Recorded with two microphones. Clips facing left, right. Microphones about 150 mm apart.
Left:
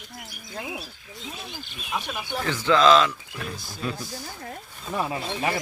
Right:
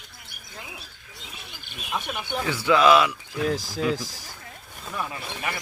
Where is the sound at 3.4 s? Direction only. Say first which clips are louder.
Right 13 dB; 90° right.